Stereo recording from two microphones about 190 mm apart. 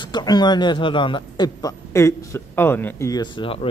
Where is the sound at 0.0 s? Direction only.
20° left (ahead or behind).